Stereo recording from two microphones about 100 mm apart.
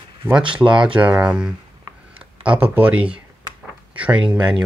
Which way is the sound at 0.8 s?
10° right (ahead or behind).